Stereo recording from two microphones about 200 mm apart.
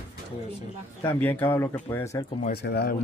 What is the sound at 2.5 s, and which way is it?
Speech, 55° left (ahead or behind).